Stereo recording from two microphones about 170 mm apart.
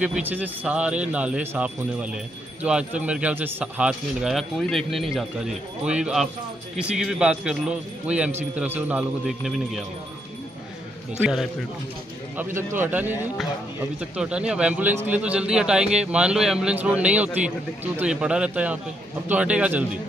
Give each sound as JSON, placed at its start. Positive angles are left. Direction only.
{"t": 0.0, "sound": "a man's voice", "side_deg": -10}
{"t": 12.4, "sound": "a man's voice", "side_deg": -10}